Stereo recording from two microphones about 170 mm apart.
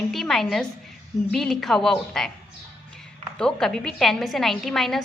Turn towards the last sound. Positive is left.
turn(degrees=0)  # may be behind; listen again after turning